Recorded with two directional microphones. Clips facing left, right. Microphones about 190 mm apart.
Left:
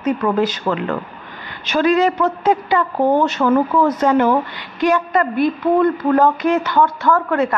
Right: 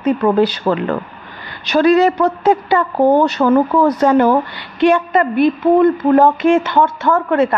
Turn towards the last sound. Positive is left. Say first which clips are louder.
# right 2 dB
turn(degrees=-25)  # may be behind; listen again after turning